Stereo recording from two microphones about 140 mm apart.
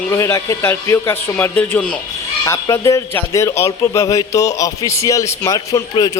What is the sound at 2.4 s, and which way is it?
A man's voice, 20° left (ahead or behind).